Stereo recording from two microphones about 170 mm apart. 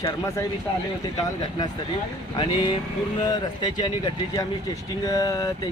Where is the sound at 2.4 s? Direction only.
30° left (ahead or behind).